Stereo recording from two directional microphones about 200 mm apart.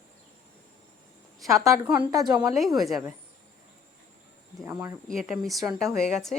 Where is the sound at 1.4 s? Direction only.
15° right (ahead or behind).